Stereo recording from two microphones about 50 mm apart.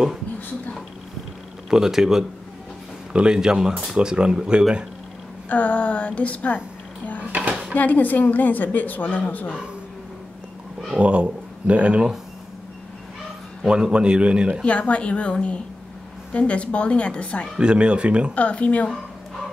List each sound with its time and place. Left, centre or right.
1.7 s speech: centre
3.1 s speech: centre
5.5 s a woman's voice: left
7.7 s a woman's voice: left
11.0 s speech: right
13.7 s a man's voice: centre
14.6 s a woman's voice: left
17.6 s a man's voice: centre
18.3 s a woman's voice: left